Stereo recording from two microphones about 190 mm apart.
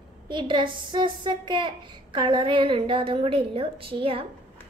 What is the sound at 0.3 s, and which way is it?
A woman's voice, 25° right (ahead or behind).